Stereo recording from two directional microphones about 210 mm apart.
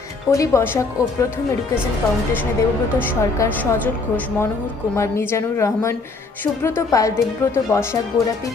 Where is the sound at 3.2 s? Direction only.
15° left (ahead or behind).